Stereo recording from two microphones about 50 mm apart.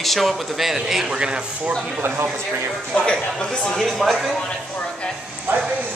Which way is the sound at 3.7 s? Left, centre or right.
Centre.